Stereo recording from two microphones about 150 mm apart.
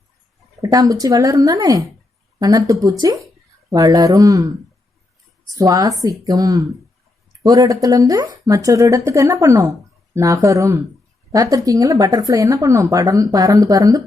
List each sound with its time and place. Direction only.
0.6 s speech: 25° right (ahead or behind)
5.5 s speech: 25° right (ahead or behind)